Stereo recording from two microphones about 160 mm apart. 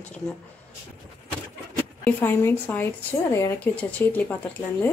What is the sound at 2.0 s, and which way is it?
A woman's voice, 10° left (ahead or behind).